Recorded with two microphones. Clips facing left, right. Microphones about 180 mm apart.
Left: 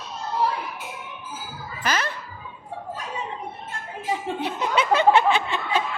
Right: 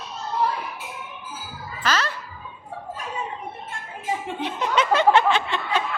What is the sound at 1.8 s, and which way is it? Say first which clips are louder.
Speech: right 1 dB; 15° left (ahead or behind).